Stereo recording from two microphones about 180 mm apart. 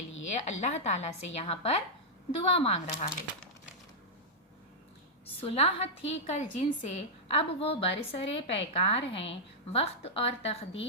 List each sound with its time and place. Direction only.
0.3 s a woman's voice: 40° left (ahead or behind)
5.4 s a woman's voice: 35° left (ahead or behind)